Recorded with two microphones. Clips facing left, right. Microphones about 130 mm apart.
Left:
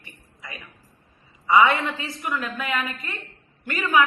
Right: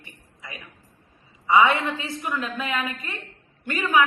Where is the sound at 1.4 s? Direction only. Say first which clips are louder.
Even; 25° right (ahead or behind).